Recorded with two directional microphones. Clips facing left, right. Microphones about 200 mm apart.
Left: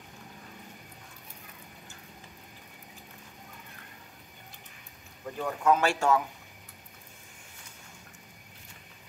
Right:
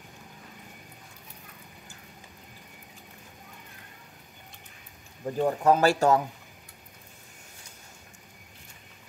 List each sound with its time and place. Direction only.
5.2 s speech: 30° right (ahead or behind)